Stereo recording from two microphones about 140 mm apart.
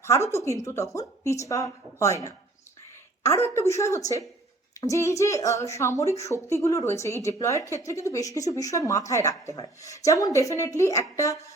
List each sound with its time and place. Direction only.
0.0 s speech: 20° left (ahead or behind)